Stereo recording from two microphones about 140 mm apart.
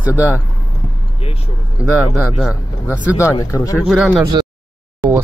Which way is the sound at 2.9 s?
10° right (ahead or behind).